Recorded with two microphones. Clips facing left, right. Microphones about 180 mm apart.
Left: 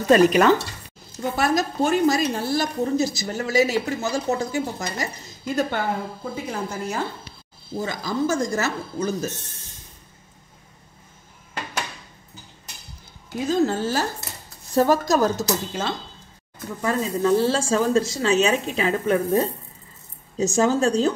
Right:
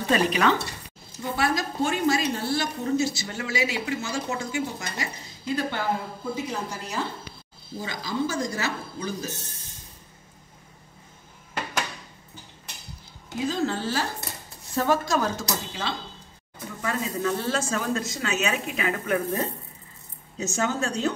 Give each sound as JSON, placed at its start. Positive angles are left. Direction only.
{"t": 0.1, "sound": "a woman's voice", "side_deg": 45}
{"t": 13.5, "sound": "a woman's voice", "side_deg": 45}